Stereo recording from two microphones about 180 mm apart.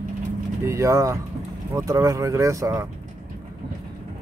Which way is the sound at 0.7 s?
15° right (ahead or behind).